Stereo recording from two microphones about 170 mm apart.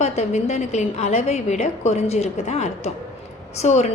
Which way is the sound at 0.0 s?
40° left (ahead or behind).